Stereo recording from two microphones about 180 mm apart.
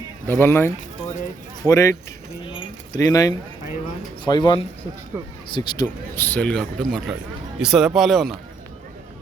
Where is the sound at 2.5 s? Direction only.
25° left (ahead or behind).